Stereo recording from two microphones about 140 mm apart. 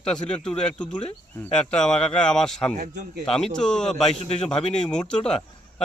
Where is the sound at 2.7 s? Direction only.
60° right (ahead or behind).